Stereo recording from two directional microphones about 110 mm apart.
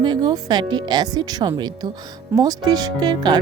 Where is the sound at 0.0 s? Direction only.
40° right (ahead or behind).